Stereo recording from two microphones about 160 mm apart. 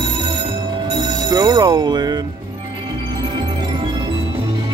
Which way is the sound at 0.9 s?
25° right (ahead or behind).